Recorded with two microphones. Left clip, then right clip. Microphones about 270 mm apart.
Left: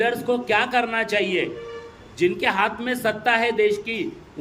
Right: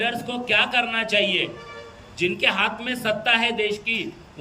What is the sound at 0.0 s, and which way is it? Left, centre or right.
A man's voice, centre.